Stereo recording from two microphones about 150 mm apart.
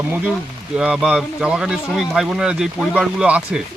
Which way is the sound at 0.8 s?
5° right (ahead or behind).